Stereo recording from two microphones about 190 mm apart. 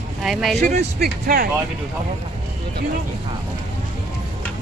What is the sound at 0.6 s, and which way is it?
Speech, 35° right (ahead or behind).